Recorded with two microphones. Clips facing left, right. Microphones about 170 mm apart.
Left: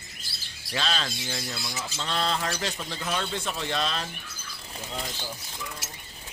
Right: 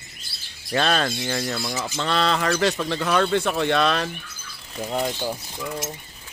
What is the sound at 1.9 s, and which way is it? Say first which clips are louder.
Speech: right 6 dB; 70° right (ahead or behind).